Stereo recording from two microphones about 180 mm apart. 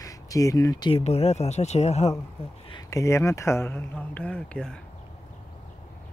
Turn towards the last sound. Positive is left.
turn(degrees=5)  # may be behind; listen again after turning